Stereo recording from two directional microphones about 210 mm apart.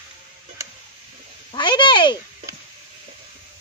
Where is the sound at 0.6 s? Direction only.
15° right (ahead or behind).